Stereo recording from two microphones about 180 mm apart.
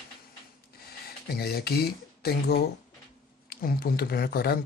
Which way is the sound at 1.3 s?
60° left (ahead or behind).